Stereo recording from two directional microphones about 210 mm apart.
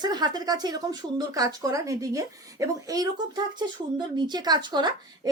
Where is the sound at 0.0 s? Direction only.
20° right (ahead or behind).